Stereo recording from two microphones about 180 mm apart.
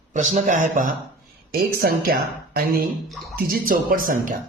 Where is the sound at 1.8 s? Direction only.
55° right (ahead or behind).